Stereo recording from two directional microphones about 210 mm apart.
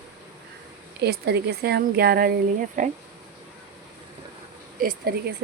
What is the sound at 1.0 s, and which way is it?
Speech, 50° right (ahead or behind).